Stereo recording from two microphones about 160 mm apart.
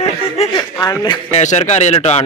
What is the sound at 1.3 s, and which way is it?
Speech, 45° left (ahead or behind).